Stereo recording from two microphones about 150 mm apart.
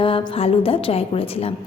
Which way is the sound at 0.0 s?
40° left (ahead or behind).